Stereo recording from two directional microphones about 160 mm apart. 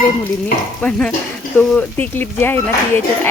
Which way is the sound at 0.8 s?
5° left (ahead or behind).